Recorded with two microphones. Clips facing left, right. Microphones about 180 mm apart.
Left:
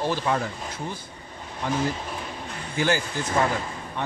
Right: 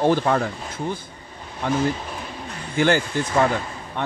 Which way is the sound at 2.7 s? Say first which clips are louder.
Right 5 dB; 60° right (ahead or behind).